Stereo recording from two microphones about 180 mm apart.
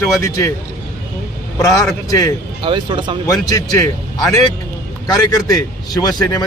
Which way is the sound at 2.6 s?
25° right (ahead or behind).